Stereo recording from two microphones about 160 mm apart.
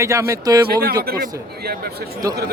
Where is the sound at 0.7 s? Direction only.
75° right (ahead or behind).